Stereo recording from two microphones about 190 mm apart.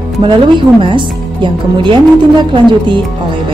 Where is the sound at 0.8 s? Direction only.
25° right (ahead or behind).